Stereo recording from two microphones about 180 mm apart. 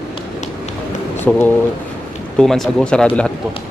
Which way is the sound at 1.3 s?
5° left (ahead or behind).